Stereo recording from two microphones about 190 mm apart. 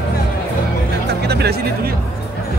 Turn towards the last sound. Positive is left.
turn(degrees=-60)  # may be behind; listen again after turning